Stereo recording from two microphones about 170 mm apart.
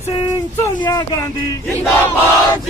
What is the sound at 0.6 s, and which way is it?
Speech, 20° left (ahead or behind).